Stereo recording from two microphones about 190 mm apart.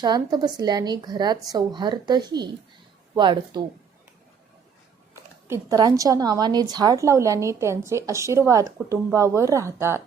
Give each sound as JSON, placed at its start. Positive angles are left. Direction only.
{"t": 0.0, "sound": "a woman's voice", "side_deg": -20}
{"t": 5.1, "sound": "a woman's voice", "side_deg": -15}